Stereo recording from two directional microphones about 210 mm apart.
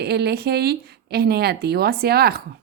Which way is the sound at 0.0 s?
50° right (ahead or behind).